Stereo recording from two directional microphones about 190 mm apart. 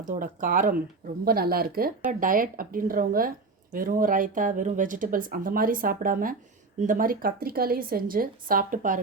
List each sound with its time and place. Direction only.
0.1 s speech: 45° right (ahead or behind)